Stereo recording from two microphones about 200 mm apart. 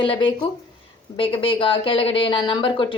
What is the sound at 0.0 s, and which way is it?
Speech, 25° left (ahead or behind).